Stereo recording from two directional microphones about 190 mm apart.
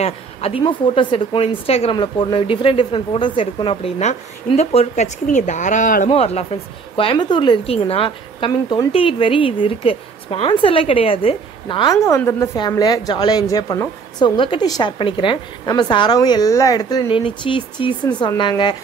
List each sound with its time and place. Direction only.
0.0 s a woman's voice: 30° left (ahead or behind)